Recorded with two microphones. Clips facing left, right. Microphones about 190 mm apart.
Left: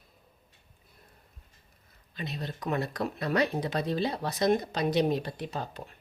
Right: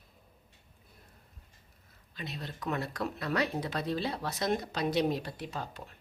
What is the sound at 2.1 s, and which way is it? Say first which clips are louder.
Speech: left 4 dB; 20° left (ahead or behind).